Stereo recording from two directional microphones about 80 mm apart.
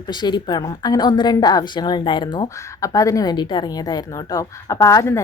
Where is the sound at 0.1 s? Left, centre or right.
Left.